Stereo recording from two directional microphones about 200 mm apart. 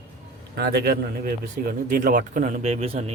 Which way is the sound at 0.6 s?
50° right (ahead or behind).